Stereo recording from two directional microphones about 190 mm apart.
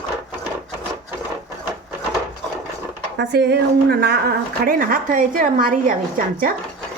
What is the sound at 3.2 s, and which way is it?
A woman's voice, 60° right (ahead or behind).